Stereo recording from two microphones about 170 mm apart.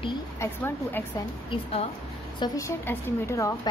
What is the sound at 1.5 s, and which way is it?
Speech, 35° left (ahead or behind).